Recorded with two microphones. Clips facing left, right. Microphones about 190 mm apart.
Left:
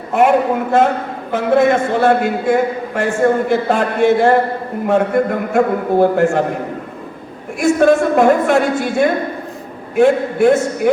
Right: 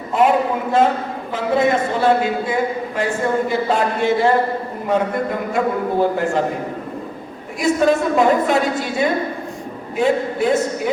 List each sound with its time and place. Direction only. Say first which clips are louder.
0.1 s a man's voice: left 3 dB; 50° left (ahead or behind)
7.6 s a man's voice: left 4 dB; 55° left (ahead or behind)